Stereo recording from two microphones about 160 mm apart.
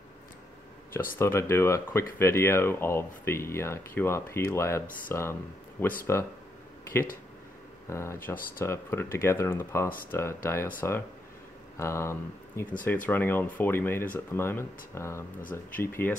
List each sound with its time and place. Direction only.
1.1 s speech: 15° left (ahead or behind)
7.9 s speech: 15° left (ahead or behind)